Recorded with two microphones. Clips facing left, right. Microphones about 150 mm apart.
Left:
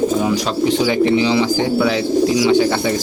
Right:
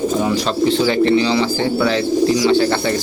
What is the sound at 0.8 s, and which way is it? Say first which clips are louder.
Speech: even; 10° left (ahead or behind).